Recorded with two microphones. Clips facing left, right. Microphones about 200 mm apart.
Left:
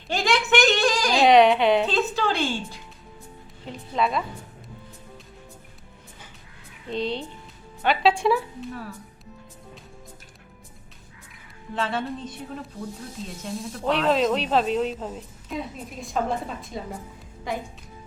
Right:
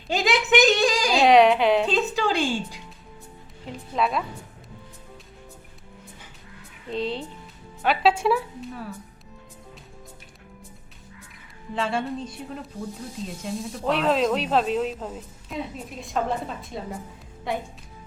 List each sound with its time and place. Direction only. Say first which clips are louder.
0.1 s a sound: right 1 dB; 15° right (ahead or behind)
1.1 s speech: even; centre (ahead or behind)
2.0 s music: right 1 dB; 15° right (ahead or behind)
3.7 s music: even; centre (ahead or behind)
6.8 s speech: even; 5° right (ahead or behind)
11.7 s speech: right 1 dB; centre (ahead or behind)